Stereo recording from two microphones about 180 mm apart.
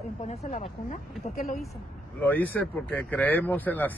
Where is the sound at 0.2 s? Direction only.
35° left (ahead or behind).